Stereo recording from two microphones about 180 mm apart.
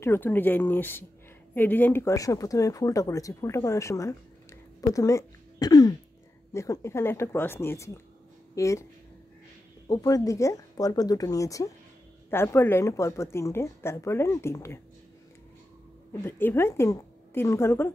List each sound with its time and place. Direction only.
0.0 s speech: 10° left (ahead or behind)
9.8 s a woman's voice: 20° left (ahead or behind)
16.1 s speech: 10° left (ahead or behind)